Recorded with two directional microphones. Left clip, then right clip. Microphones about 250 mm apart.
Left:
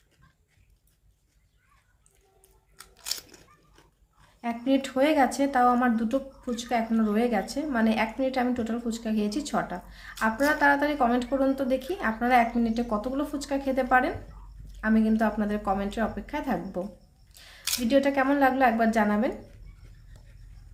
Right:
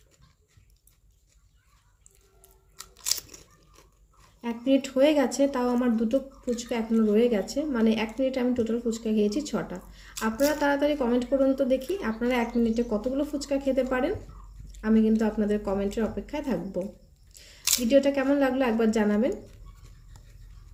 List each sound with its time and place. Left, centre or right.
2.7 s crunch: centre
4.4 s a woman's voice: centre